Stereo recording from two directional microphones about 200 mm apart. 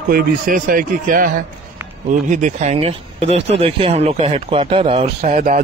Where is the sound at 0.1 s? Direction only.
45° right (ahead or behind).